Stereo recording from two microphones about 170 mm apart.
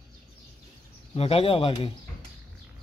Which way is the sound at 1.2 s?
35° left (ahead or behind).